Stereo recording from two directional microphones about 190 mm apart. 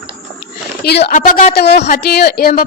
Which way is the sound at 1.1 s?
45° left (ahead or behind).